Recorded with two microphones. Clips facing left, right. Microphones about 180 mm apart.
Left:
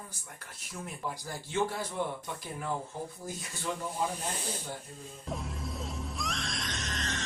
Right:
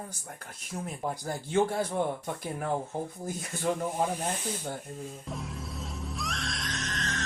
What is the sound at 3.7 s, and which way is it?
Speech, 45° right (ahead or behind).